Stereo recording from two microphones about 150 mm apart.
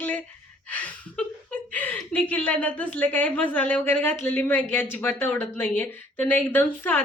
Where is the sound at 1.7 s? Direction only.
10° left (ahead or behind).